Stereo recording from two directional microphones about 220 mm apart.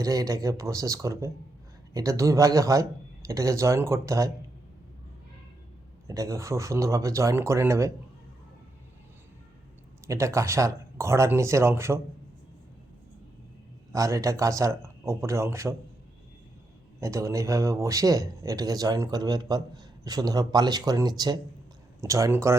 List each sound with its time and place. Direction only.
0.0 s speech: 15° right (ahead or behind)
6.1 s speech: 15° right (ahead or behind)
10.1 s speech: 15° right (ahead or behind)
13.9 s speech: 15° right (ahead or behind)
17.0 s speech: 15° right (ahead or behind)